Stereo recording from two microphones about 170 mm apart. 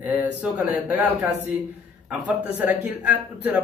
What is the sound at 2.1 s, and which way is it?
Speech, 10° right (ahead or behind).